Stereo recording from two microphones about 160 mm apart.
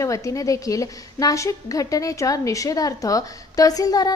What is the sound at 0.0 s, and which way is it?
A woman's voice, 20° left (ahead or behind).